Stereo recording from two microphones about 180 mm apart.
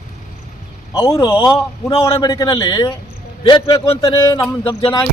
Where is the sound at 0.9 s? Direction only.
20° left (ahead or behind).